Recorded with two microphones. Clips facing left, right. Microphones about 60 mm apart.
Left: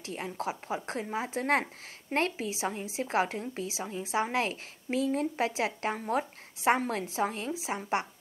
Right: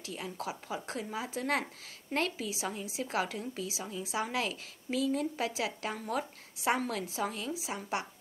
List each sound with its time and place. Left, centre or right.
0.0 s a woman's voice: left